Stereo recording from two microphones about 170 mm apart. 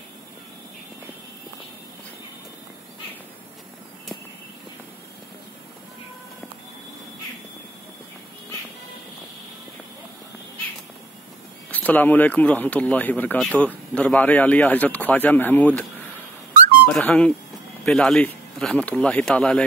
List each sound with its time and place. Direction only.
11.7 s speech: 10° left (ahead or behind)